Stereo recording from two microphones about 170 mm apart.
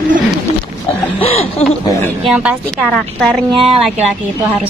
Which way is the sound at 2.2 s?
5° right (ahead or behind).